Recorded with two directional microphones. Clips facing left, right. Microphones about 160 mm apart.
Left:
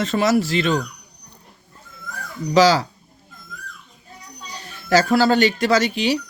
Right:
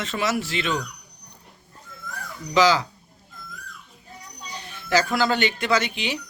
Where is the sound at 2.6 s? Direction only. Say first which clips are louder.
Left 4 dB; 40° left (ahead or behind).